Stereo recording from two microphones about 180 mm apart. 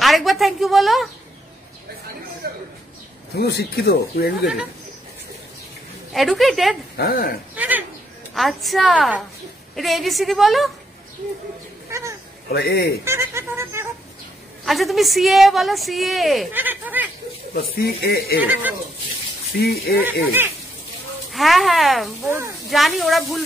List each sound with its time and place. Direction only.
0.0 s a woman's voice: centre (ahead or behind)
3.3 s speech: 60° left (ahead or behind)
6.1 s a woman's voice: centre (ahead or behind)
7.0 s speech: 55° left (ahead or behind)
7.5 s a woman's voice: 10° right (ahead or behind)
11.9 s a sound: 15° right (ahead or behind)
12.5 s speech: 60° left (ahead or behind)
13.0 s speech: 15° right (ahead or behind)
14.6 s a woman's voice: centre (ahead or behind)
17.6 s speech: 60° left (ahead or behind)
18.4 s speech: 10° right (ahead or behind)
19.5 s speech: 60° left (ahead or behind)
21.3 s a woman's voice: centre (ahead or behind)